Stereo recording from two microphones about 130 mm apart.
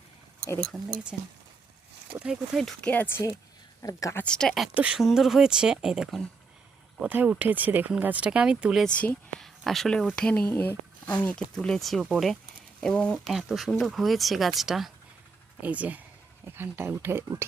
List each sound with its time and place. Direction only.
1.1 s speech: centre (ahead or behind)
2.9 s speech: 15° left (ahead or behind)
3.8 s a woman's voice: 25° left (ahead or behind)
4.2 s speech: 5° left (ahead or behind)
4.7 s speech: 10° right (ahead or behind)
7.0 s speech: 15° right (ahead or behind)
8.9 s speech: 10° left (ahead or behind); by 17.4 s 20° right (ahead or behind)